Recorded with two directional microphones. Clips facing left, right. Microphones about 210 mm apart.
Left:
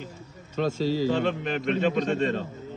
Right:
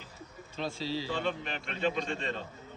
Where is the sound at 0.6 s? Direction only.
45° left (ahead or behind).